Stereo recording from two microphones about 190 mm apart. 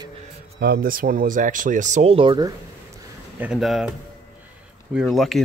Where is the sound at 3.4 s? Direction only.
5° right (ahead or behind).